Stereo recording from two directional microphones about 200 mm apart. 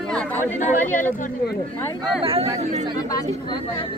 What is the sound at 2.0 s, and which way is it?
Speech, 25° right (ahead or behind).